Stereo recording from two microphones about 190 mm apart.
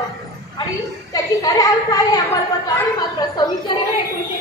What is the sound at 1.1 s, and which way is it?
A woman's voice, 20° left (ahead or behind).